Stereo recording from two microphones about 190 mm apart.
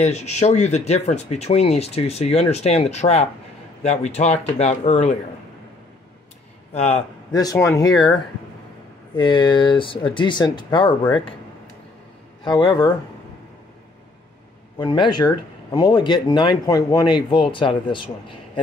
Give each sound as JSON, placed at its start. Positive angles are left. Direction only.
{"t": 0.0, "sound": "speech", "side_deg": 35}
{"t": 6.7, "sound": "speech", "side_deg": 35}
{"t": 7.3, "sound": "speech", "side_deg": 15}
{"t": 9.1, "sound": "speech", "side_deg": 25}
{"t": 12.4, "sound": "speech", "side_deg": 20}
{"t": 14.8, "sound": "speech", "side_deg": 25}